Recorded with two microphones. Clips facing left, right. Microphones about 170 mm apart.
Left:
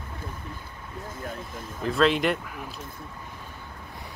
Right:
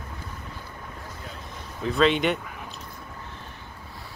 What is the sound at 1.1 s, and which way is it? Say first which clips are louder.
Vehicle: left 4 dB; 50° left (ahead or behind).